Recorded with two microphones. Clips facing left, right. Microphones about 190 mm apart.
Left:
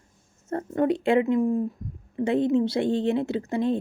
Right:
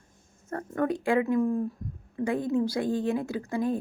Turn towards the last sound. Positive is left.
turn(degrees=25)  # may be behind; listen again after turning